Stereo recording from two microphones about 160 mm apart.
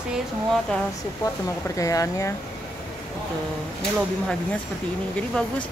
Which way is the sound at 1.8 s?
20° left (ahead or behind).